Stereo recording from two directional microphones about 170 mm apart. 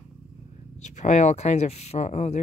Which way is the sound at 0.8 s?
45° left (ahead or behind).